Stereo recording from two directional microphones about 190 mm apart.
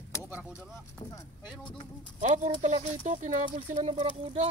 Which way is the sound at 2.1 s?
40° right (ahead or behind).